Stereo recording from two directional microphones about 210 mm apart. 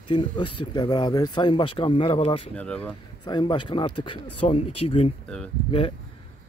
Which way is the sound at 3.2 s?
20° left (ahead or behind).